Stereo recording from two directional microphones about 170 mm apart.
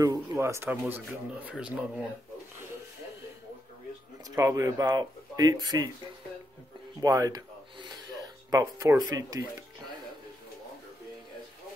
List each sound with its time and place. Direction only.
0.0 s speech: 20° right (ahead or behind)
4.4 s speech: 20° right (ahead or behind)
7.0 s a sound: 20° right (ahead or behind)
8.5 s speech: 20° right (ahead or behind)